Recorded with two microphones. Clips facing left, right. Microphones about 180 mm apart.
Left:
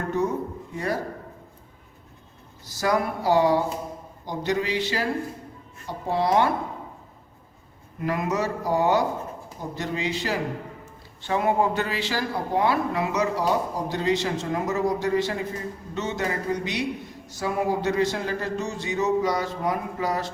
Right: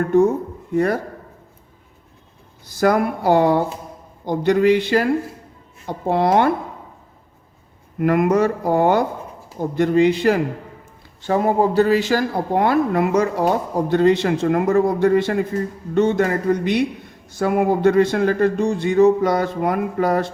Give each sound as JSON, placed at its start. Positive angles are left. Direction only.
{"t": 2.8, "sound": "speech", "side_deg": -55}
{"t": 6.1, "sound": "speech", "side_deg": -55}
{"t": 7.9, "sound": "speech", "side_deg": -55}
{"t": 11.2, "sound": "speech", "side_deg": -40}